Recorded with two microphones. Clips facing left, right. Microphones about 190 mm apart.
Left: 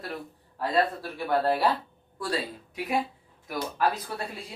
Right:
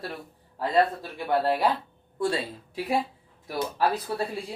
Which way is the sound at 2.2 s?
30° right (ahead or behind).